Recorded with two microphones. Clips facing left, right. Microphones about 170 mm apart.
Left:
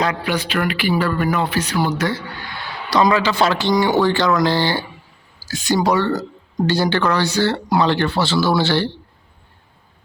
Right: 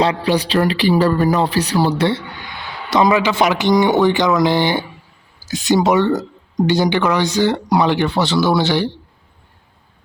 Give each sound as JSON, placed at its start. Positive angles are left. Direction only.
{"t": 0.0, "sound": "speech", "side_deg": -30}